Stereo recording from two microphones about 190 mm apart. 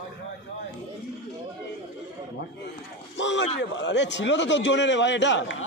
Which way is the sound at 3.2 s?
70° left (ahead or behind).